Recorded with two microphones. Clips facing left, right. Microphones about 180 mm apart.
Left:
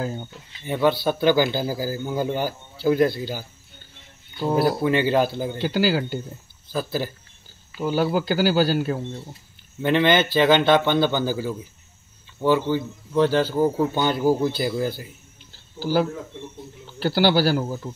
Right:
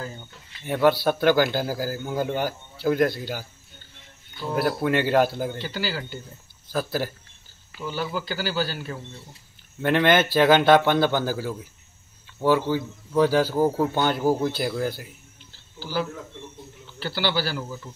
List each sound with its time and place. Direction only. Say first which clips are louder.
0.7 s a man's voice: right 1 dB; centre (ahead or behind)
4.4 s speech: left 5 dB; 35° left (ahead or behind)
4.6 s a man's voice: left 2 dB; centre (ahead or behind)
5.6 s speech: left 9 dB; 50° left (ahead or behind)
6.7 s a man's voice: even; centre (ahead or behind)
7.8 s speech: left 8 dB; 45° left (ahead or behind)
9.8 s a man's voice: left 1 dB; centre (ahead or behind)
15.8 s speech: left 7 dB; 45° left (ahead or behind)